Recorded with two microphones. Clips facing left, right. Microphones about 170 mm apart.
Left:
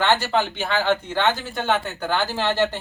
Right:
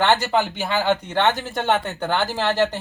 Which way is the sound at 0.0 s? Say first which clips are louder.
Right 1 dB; 15° right (ahead or behind).